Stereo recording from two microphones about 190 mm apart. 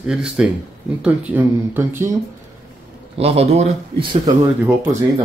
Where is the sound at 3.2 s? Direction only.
30° right (ahead or behind).